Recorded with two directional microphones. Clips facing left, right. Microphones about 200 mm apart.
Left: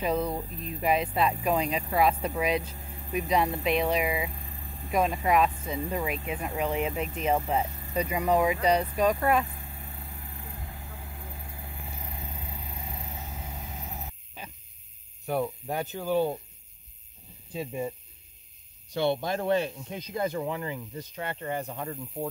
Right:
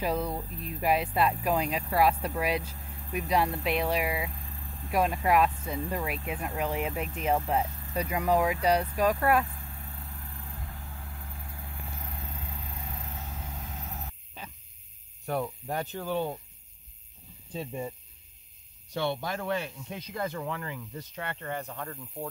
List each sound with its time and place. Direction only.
0.0 s speech: 5° right (ahead or behind)
9.3 s vehicle: 5° left (ahead or behind)
15.2 s speech: 5° left (ahead or behind)
18.9 s speech: 20° left (ahead or behind)